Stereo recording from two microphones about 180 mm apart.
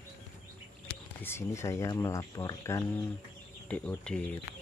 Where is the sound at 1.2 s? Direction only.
15° left (ahead or behind).